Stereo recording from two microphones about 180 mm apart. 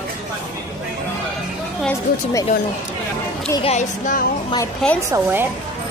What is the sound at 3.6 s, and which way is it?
Speech, 40° left (ahead or behind).